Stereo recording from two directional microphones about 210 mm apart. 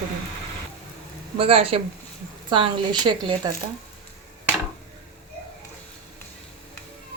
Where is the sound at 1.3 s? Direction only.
25° right (ahead or behind).